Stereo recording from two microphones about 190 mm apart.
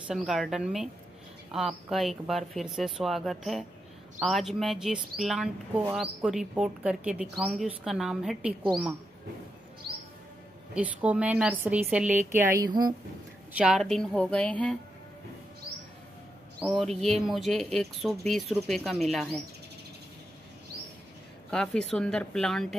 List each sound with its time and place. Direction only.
0.1 s a woman's voice: centre (ahead or behind)
10.7 s a woman's voice: 5° right (ahead or behind)
13.5 s speech: 5° right (ahead or behind)
16.6 s speech: centre (ahead or behind)
21.5 s speech: 5° left (ahead or behind)